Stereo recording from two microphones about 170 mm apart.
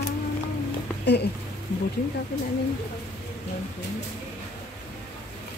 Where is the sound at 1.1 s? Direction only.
80° left.